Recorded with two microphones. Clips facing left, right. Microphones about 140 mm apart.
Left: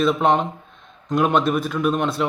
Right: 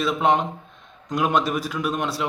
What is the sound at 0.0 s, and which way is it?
A man's voice, 55° left (ahead or behind).